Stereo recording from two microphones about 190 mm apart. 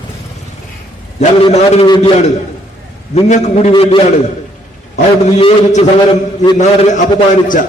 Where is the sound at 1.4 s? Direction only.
30° left (ahead or behind).